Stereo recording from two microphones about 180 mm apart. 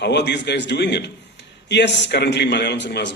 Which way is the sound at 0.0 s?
70° left (ahead or behind).